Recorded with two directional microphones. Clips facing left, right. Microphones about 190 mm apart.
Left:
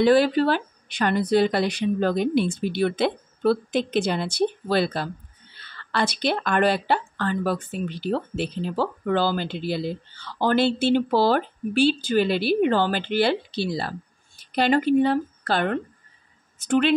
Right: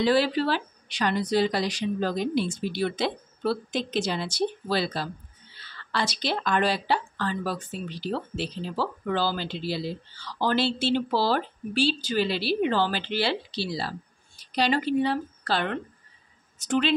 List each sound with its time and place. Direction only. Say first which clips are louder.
0.0 s a woman's voice: left 5 dB; 50° left (ahead or behind)